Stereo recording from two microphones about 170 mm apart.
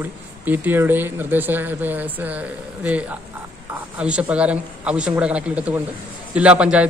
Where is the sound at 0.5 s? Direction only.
10° right (ahead or behind).